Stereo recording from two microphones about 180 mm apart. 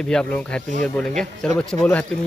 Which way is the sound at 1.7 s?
15° left (ahead or behind).